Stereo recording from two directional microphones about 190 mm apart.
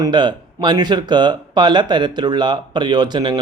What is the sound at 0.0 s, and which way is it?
Speech, 25° right (ahead or behind).